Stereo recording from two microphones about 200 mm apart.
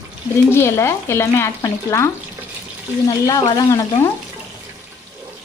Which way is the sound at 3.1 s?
20° left (ahead or behind).